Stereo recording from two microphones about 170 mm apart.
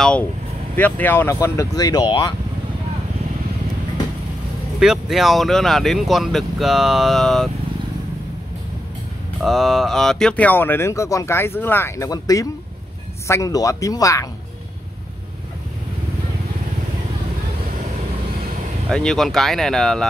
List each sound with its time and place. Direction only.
0.7 s speech: 10° left (ahead or behind); by 2.3 s 25° left (ahead or behind)
4.7 s speech: 5° right (ahead or behind)
9.4 s speech: centre (ahead or behind); by 14.2 s 20° left (ahead or behind)
18.9 s speech: 5° left (ahead or behind)